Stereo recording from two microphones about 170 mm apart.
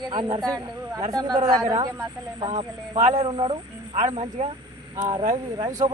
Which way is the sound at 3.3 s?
30° right (ahead or behind).